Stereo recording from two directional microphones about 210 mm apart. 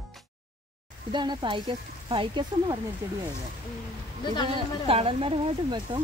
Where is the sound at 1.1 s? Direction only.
20° right (ahead or behind).